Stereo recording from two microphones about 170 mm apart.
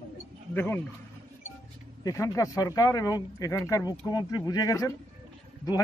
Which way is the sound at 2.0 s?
20° left (ahead or behind).